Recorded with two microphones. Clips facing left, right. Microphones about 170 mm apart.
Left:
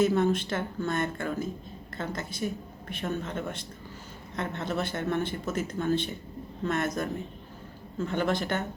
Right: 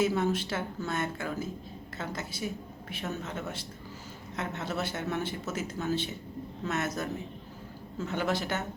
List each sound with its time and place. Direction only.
0.0 s speech: 5° right (ahead or behind)